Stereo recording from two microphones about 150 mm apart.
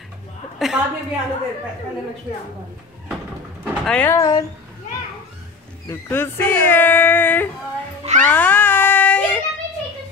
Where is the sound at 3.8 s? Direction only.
10° left (ahead or behind).